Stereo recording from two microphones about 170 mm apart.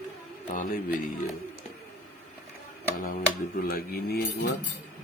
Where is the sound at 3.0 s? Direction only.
55° left (ahead or behind).